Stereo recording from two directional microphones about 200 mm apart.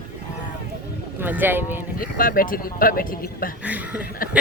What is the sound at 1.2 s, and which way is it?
Speech, 10° right (ahead or behind).